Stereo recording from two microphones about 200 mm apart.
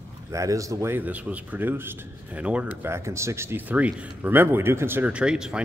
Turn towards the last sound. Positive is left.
turn(degrees=-5)  # may be behind; listen again after turning